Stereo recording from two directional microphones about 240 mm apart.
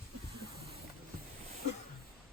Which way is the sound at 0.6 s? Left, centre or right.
Right.